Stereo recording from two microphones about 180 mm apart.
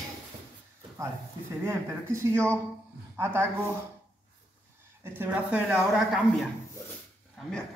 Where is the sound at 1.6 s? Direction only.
15° right (ahead or behind).